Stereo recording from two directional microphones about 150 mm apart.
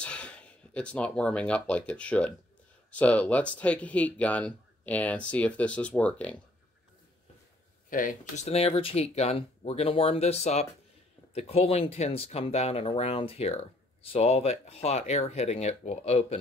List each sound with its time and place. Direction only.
0.0 s speech: 10° left (ahead or behind)
7.9 s speech: 65° left (ahead or behind)
8.5 s speech: 40° left (ahead or behind)